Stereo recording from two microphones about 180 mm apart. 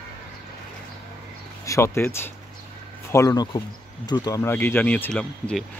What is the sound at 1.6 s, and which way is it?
Speech, 15° left (ahead or behind).